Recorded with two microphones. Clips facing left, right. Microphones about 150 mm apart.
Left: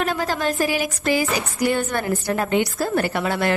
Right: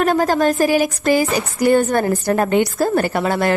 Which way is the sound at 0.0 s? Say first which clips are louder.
Right 7 dB; 45° right (ahead or behind).